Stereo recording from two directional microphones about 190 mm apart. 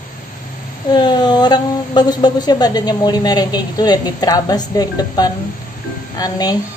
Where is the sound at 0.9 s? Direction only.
25° left (ahead or behind).